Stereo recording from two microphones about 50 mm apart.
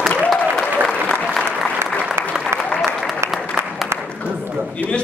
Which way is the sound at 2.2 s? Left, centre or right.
Right.